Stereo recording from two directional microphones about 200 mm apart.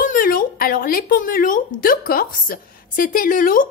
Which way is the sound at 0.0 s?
45° left (ahead or behind).